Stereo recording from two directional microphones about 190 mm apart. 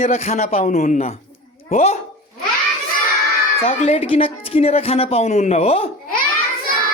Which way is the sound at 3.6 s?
35° left (ahead or behind).